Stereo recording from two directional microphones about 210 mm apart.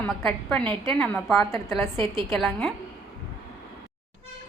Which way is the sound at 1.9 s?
25° right (ahead or behind).